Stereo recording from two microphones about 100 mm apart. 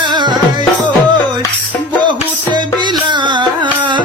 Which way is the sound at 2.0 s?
50° right (ahead or behind).